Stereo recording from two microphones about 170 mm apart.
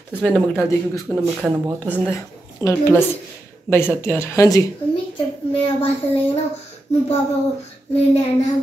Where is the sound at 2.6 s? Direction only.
15° left (ahead or behind).